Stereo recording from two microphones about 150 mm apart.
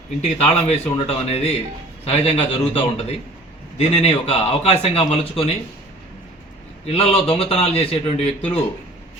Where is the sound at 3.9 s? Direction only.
45° left (ahead or behind).